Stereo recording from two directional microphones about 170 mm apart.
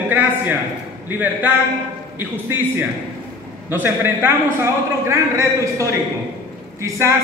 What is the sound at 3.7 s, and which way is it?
A man's voice, 15° right (ahead or behind).